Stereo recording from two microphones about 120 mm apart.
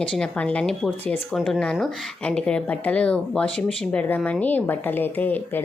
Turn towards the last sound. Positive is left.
turn(degrees=15)  # may be behind; listen again after turning